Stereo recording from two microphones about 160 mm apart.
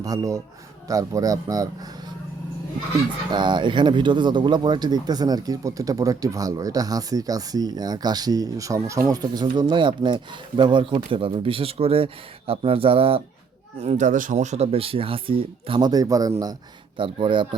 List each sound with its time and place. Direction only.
0.0 s speech: 20° right (ahead or behind)
3.3 s speech: 30° right (ahead or behind)
13.8 s speech: 50° right (ahead or behind); by 17.5 s 30° right (ahead or behind)